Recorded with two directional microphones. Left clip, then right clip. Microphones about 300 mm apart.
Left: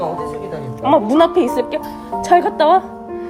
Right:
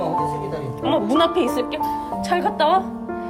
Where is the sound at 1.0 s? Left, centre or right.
Left.